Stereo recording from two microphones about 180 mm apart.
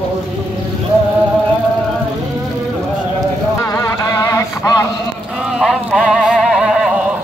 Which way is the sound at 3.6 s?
15° left (ahead or behind).